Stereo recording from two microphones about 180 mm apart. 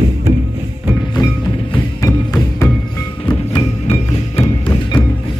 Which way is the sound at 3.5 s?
30° left (ahead or behind).